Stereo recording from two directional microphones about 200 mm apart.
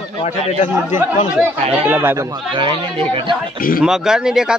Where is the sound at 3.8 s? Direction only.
5° right (ahead or behind).